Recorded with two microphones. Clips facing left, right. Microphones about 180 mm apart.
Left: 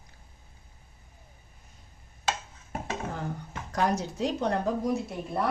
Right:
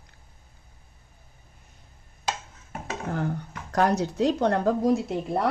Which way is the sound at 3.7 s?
65° right (ahead or behind).